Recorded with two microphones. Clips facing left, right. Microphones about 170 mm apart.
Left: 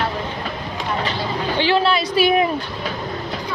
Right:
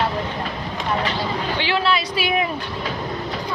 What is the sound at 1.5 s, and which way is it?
Speech, 35° left (ahead or behind).